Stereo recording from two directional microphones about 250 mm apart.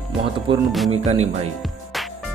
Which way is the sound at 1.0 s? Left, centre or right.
Right.